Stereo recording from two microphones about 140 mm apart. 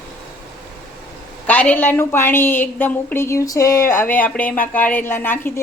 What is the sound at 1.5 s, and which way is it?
Speech, 10° left (ahead or behind).